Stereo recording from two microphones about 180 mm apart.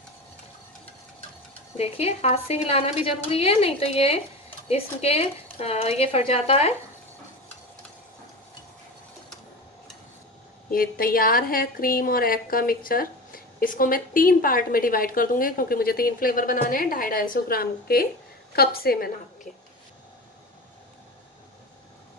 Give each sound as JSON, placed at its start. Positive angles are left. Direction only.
{"t": 1.8, "sound": "a woman's voice", "side_deg": 35}
{"t": 10.7, "sound": "a woman's voice", "side_deg": 55}